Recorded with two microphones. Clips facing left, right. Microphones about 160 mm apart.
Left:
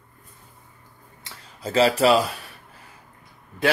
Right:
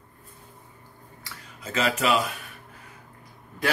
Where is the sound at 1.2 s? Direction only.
35° left (ahead or behind).